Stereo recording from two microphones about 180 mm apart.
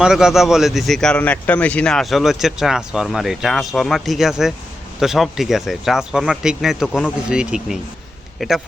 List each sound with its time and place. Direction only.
0.0 s a man's voice: 5° right (ahead or behind)